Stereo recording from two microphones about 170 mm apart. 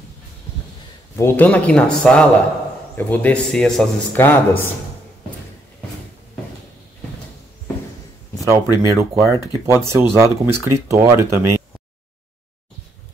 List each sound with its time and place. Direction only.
1.1 s a man's voice: 10° left (ahead or behind)
8.7 s speech: 15° right (ahead or behind)